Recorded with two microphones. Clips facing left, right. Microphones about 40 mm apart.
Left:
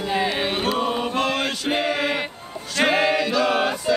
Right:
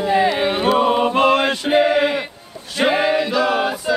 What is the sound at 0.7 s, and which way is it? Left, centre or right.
Chant, right.